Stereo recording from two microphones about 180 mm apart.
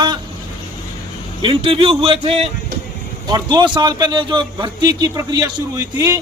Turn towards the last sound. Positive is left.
turn(degrees=-15)  # may be behind; listen again after turning